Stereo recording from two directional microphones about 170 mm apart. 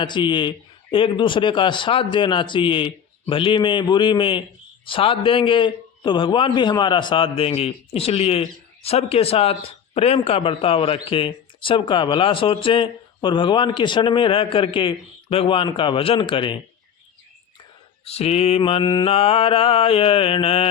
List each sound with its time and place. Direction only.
0.0 s a man's voice: 25° left (ahead or behind)
18.0 s a man's voice: 35° left (ahead or behind)